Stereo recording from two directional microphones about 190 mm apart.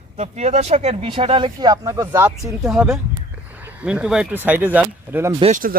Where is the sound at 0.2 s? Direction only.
35° right (ahead or behind); by 2.6 s 15° right (ahead or behind).